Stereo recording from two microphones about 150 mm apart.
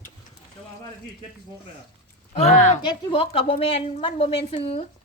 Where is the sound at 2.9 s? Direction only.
35° left (ahead or behind).